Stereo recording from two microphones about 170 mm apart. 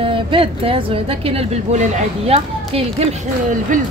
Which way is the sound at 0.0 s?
30° right (ahead or behind).